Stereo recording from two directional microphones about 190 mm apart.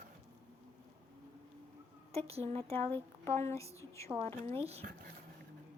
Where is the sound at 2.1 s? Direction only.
30° right (ahead or behind).